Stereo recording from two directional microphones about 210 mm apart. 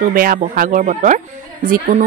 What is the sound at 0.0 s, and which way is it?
Speech, 45° right (ahead or behind).